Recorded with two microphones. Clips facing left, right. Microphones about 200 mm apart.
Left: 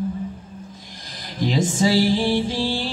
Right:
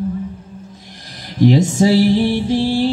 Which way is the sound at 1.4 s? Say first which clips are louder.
Right 7 dB; 65° right (ahead or behind).